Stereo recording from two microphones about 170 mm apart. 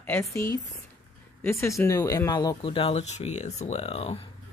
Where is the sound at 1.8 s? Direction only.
20° left (ahead or behind); by 4.2 s 35° left (ahead or behind).